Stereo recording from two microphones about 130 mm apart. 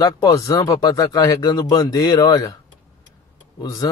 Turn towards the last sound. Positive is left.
turn(degrees=25)  # may be behind; listen again after turning